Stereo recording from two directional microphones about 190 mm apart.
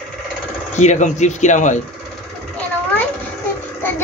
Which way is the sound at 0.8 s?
40° left (ahead or behind).